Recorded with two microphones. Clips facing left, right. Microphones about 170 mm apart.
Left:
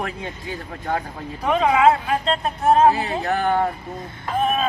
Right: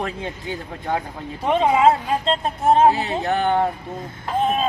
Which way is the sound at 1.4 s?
25° right (ahead or behind).